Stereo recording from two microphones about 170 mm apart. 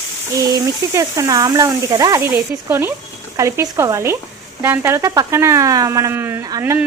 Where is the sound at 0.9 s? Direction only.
20° right (ahead or behind).